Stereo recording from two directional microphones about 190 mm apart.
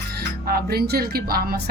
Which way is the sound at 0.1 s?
55° right (ahead or behind).